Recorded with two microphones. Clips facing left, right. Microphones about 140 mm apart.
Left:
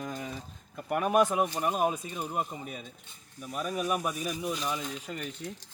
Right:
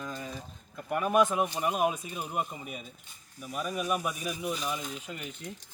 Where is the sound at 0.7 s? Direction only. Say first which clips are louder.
Left 1 dB; 5° left (ahead or behind).